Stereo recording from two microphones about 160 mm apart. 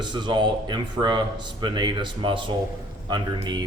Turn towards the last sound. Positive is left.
turn(degrees=-30)  # may be behind; listen again after turning